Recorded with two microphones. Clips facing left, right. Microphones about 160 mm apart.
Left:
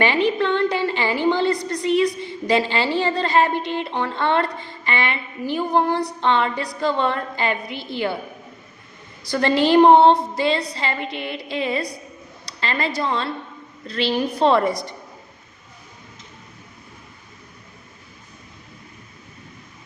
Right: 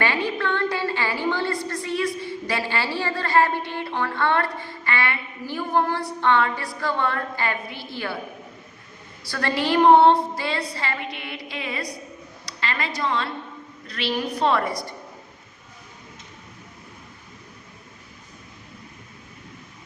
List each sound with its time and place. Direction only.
0.3 s a woman's voice: 20° left (ahead or behind)
9.3 s a woman's voice: 25° left (ahead or behind)